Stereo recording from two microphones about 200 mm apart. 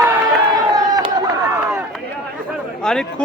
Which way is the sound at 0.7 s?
20° right (ahead or behind).